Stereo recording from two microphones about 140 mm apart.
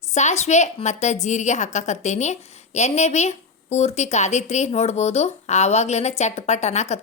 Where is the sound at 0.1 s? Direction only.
55° left (ahead or behind).